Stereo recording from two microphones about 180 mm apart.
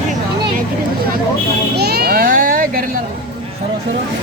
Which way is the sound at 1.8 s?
60° right (ahead or behind).